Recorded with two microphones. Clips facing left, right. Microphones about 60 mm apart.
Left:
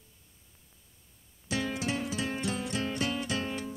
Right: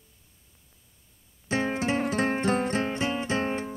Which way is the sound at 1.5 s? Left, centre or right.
Right.